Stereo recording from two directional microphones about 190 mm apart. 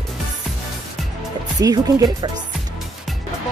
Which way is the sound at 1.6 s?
20° right (ahead or behind).